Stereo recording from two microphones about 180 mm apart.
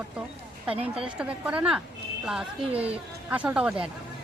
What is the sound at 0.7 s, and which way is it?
Speech, 30° right (ahead or behind).